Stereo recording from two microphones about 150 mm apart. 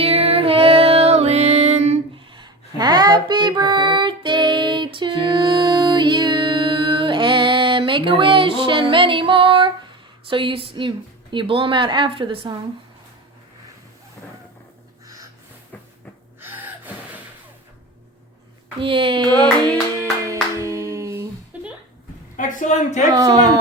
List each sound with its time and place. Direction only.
0.0 s music: 40° right (ahead or behind)
2.1 s music: 30° right (ahead or behind)
10.2 s a woman's voice: 35° right (ahead or behind)
16.4 s gasp: 15° right (ahead or behind)
18.8 s a woman's voice: 35° right (ahead or behind)
20.0 s music: 20° right (ahead or behind)
21.5 s a sound: 10° right (ahead or behind)
22.4 s a woman's voice: 60° left (ahead or behind)
23.0 s speech: 25° right (ahead or behind)